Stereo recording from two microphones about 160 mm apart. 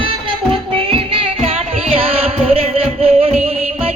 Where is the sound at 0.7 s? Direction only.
35° right (ahead or behind).